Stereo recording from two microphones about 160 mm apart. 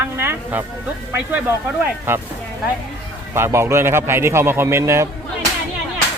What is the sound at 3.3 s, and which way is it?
A man's voice, 15° right (ahead or behind).